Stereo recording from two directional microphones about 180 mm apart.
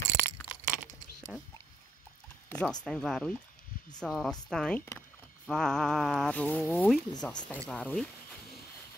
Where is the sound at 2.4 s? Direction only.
5° left (ahead or behind).